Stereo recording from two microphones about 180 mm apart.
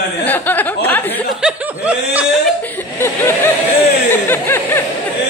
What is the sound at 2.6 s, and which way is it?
Speech, 10° left (ahead or behind).